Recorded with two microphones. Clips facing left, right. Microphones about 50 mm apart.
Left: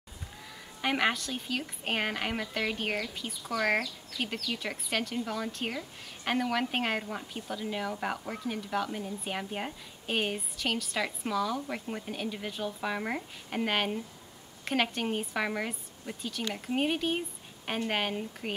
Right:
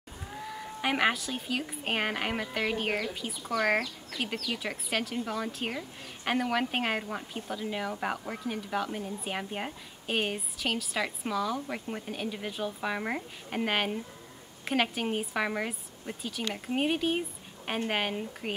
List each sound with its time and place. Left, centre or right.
0.5 s a woman's voice: centre
4.1 s speech: right
4.6 s a woman's voice: centre